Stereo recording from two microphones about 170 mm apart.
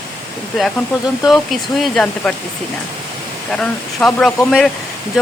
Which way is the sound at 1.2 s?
Centre (ahead or behind).